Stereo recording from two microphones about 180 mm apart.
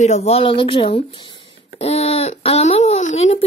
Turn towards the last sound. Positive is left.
turn(degrees=40)  # may be behind; listen again after turning